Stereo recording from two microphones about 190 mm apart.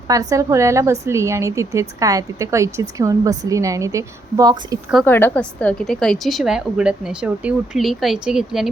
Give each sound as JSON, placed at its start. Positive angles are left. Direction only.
{"t": 0.1, "sound": "a woman's voice", "side_deg": -20}
{"t": 5.0, "sound": "a woman's voice", "side_deg": 10}